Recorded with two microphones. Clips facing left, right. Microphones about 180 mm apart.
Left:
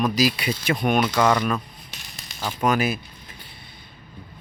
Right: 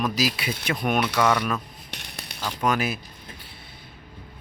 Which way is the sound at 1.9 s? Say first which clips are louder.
Right 4 dB; 65° right (ahead or behind).